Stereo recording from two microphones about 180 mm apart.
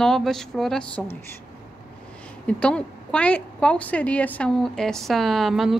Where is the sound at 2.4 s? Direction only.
5° left (ahead or behind).